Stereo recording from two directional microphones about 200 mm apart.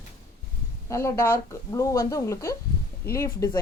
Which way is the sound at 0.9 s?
15° left (ahead or behind).